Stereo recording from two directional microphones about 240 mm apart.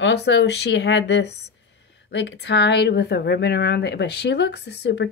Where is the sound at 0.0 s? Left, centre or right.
Left.